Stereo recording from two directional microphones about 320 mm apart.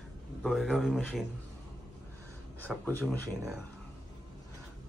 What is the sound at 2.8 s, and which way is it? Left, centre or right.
Speech, centre.